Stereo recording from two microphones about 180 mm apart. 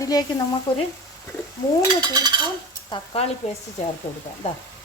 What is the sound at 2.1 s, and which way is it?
Dishes, 20° right (ahead or behind).